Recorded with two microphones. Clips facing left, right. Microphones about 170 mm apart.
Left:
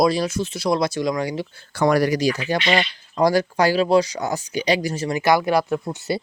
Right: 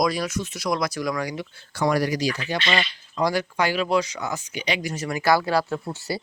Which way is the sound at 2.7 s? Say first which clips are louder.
Left 4 dB; 40° left (ahead or behind).